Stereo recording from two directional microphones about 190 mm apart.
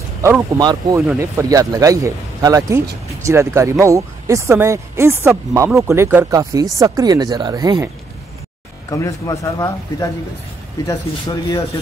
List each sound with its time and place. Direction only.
0.2 s speech: 20° right (ahead or behind)
8.9 s speech: 15° left (ahead or behind)